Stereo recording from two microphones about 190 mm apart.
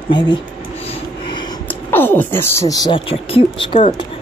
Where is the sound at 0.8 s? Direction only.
25° left (ahead or behind).